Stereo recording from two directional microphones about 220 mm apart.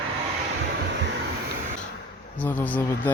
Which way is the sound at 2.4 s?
10° left (ahead or behind).